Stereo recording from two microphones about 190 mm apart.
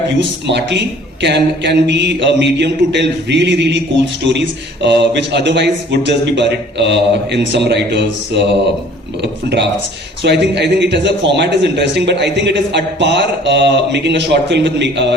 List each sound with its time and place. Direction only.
0.2 s a man's voice: 65° right (ahead or behind)